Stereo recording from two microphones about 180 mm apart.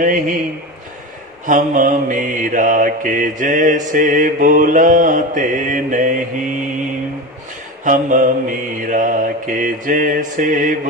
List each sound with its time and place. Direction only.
0.0 s mantra: 45° right (ahead or behind)
1.4 s mantra: 45° right (ahead or behind)
7.8 s mantra: 45° right (ahead or behind)